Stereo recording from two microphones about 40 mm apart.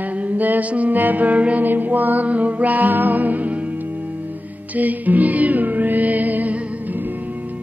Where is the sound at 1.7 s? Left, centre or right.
Right.